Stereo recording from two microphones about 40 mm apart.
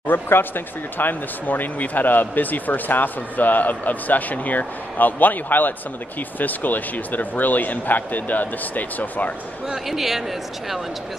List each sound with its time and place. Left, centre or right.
0.0 s speech: left
9.8 s speech: centre